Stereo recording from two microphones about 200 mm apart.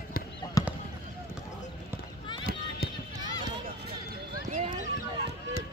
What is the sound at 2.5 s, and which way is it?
Fireworks, 45° right (ahead or behind).